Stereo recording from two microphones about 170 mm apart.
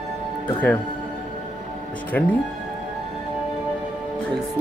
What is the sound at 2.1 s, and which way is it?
Speech, 10° left (ahead or behind).